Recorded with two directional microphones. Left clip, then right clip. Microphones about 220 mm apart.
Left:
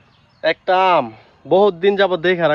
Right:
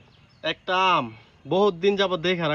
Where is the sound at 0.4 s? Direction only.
45° left (ahead or behind).